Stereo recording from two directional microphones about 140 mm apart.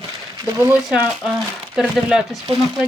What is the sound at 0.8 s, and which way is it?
Speech, 5° right (ahead or behind).